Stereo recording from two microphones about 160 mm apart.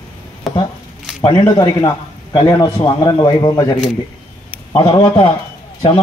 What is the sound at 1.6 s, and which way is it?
A man's voice, 25° left (ahead or behind).